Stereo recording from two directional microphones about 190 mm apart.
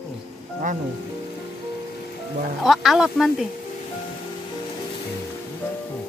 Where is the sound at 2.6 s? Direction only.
Centre (ahead or behind).